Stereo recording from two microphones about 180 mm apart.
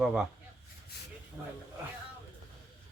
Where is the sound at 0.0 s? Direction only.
5° right (ahead or behind).